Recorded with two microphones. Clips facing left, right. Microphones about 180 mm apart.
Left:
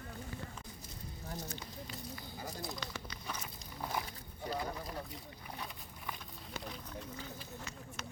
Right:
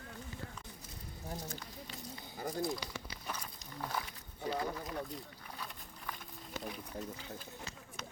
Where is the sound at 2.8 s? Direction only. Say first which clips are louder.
Even; 15° right (ahead or behind).